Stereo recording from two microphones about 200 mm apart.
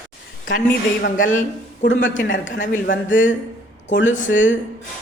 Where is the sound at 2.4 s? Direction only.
70° left (ahead or behind).